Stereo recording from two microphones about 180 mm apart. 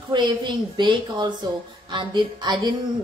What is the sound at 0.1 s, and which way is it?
A woman's voice, 25° right (ahead or behind).